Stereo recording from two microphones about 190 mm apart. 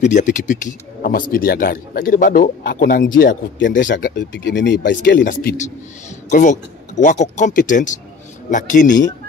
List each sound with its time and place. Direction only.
0.0 s speech: 40° left (ahead or behind)
3.5 s speech: 75° left (ahead or behind)
3.8 s speech: 45° left (ahead or behind)
4.2 s speech: 65° left (ahead or behind)
5.0 s speech: 45° left (ahead or behind)